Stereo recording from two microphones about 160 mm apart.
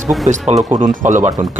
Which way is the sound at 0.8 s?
50° right (ahead or behind).